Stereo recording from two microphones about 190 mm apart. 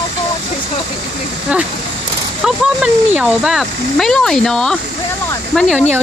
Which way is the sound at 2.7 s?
5° right (ahead or behind).